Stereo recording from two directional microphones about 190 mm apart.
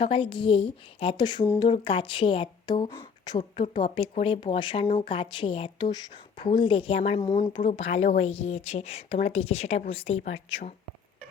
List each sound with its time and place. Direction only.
0.0 s a woman's voice: 25° left (ahead or behind)